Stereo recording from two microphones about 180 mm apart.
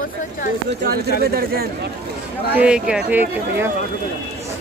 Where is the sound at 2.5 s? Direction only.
5° right (ahead or behind).